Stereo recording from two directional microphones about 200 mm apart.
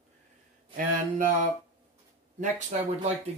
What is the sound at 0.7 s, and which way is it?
Speech, 40° right (ahead or behind).